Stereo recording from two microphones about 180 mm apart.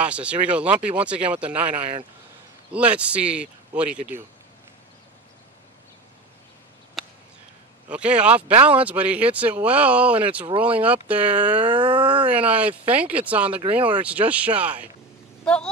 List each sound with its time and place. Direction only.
0.0 s speech: 5° right (ahead or behind)
2.7 s speech: 5° right (ahead or behind)
7.0 s a sound: centre (ahead or behind)
7.9 s speech: 5° right (ahead or behind)
11.6 s a sound: 25° right (ahead or behind)
12.3 s speech: 10° right (ahead or behind)
15.4 s speech: 5° left (ahead or behind)